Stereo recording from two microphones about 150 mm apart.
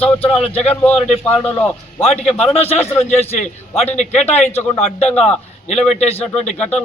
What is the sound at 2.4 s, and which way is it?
A man's voice, 45° left (ahead or behind).